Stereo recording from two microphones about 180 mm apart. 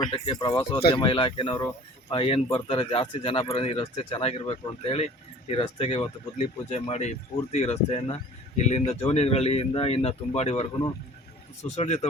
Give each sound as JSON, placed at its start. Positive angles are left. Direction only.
{"t": 0.1, "sound": "speech", "side_deg": 25}